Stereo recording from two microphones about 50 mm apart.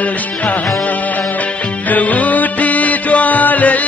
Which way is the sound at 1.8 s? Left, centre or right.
Left.